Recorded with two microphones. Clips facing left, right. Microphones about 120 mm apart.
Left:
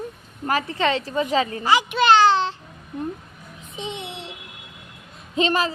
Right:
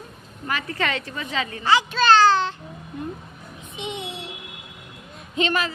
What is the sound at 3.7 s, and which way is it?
Speech, 35° left (ahead or behind).